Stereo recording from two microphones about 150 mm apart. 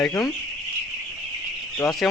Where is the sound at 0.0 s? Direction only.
10° left (ahead or behind).